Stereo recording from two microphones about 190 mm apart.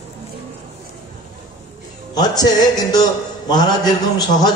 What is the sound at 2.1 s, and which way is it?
A man's voice, 20° left (ahead or behind).